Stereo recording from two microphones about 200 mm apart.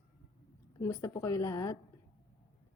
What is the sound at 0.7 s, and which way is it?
A woman's voice, 15° left (ahead or behind).